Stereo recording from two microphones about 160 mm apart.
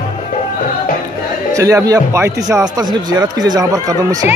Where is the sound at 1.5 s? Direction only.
20° right (ahead or behind).